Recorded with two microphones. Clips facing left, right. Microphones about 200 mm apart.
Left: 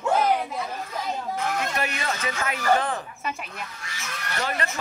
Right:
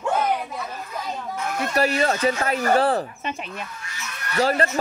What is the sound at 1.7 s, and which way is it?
Speech, 35° right (ahead or behind).